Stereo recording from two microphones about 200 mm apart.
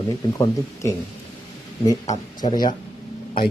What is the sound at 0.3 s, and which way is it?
Speech, 15° left (ahead or behind).